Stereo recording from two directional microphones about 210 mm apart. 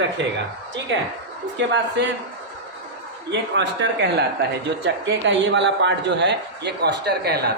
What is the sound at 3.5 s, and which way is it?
A man's voice, 55° right (ahead or behind).